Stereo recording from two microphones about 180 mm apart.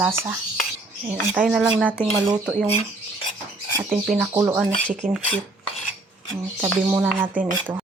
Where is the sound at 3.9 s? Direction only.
Centre (ahead or behind).